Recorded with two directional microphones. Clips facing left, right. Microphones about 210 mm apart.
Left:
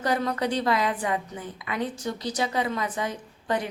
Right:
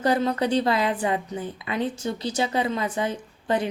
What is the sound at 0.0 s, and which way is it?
A woman's voice, 30° right (ahead or behind).